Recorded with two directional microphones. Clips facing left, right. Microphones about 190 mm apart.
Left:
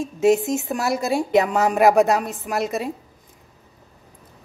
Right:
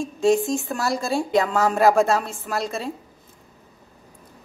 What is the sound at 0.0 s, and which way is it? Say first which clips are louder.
A woman's voice: left 2 dB; 20° left (ahead or behind).